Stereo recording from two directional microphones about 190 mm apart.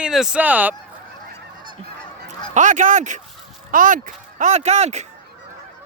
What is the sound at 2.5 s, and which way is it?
Speech, 40° right (ahead or behind).